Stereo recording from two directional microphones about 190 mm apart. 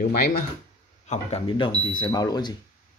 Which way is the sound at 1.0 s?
35° left (ahead or behind).